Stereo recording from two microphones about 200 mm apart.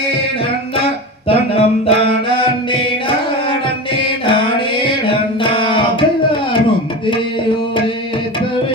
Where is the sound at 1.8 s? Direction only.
30° left (ahead or behind).